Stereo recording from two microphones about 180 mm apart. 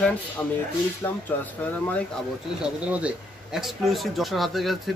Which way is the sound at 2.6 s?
5° right (ahead or behind).